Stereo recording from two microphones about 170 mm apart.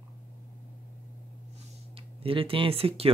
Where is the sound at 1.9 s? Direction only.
30° right (ahead or behind).